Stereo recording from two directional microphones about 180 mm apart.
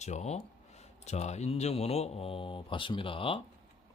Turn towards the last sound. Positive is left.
turn(degrees=30)  # may be behind; listen again after turning